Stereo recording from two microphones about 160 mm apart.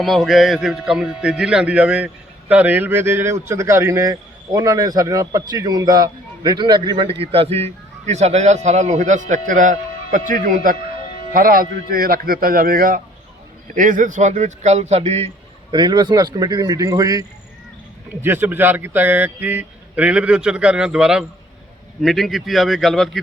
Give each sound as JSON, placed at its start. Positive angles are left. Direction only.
{"t": 0.0, "sound": "a man's voice", "side_deg": 0}
{"t": 13.7, "sound": "a man's voice", "side_deg": -55}
{"t": 15.7, "sound": "a man's voice", "side_deg": -25}